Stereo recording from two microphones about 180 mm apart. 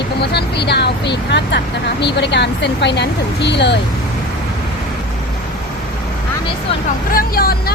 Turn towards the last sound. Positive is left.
turn(degrees=55)  # may be behind; listen again after turning